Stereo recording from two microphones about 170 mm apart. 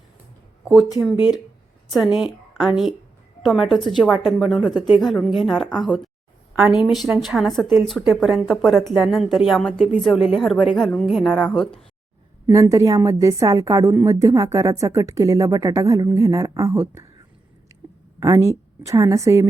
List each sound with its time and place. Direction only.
2.1 s a woman's voice: 5° right (ahead or behind)
12.5 s a woman's voice: 20° right (ahead or behind)
18.2 s a woman's voice: 20° right (ahead or behind)